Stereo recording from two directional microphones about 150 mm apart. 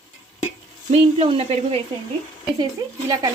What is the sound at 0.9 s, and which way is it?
Speech, 40° right (ahead or behind).